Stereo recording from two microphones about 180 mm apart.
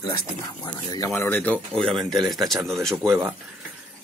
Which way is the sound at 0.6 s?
25° left (ahead or behind).